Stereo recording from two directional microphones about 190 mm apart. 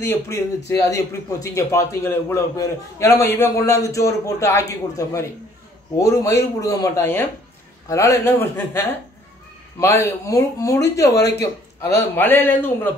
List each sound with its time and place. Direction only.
0.0 s a man's voice: 15° left (ahead or behind)